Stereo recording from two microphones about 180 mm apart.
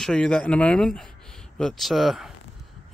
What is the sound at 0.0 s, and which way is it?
Speech, 5° left (ahead or behind).